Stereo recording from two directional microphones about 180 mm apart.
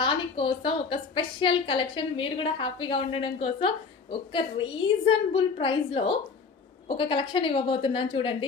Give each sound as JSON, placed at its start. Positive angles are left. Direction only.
{"t": 0.0, "sound": "a woman's voice", "side_deg": 30}